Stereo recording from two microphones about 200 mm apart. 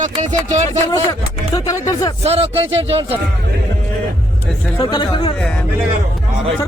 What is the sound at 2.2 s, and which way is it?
Speech, 30° right (ahead or behind).